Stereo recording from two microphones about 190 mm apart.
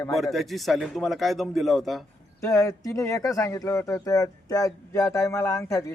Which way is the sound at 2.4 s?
15° left (ahead or behind).